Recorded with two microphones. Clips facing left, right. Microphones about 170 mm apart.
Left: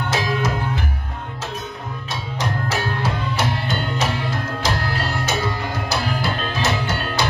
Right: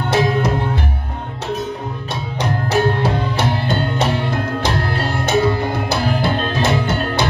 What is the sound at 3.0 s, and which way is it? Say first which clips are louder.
Music: right 4 dB; 60° right (ahead or behind).